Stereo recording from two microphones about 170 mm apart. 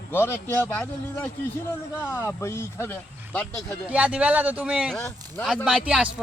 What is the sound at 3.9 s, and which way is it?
A man's voice, 5° right (ahead or behind).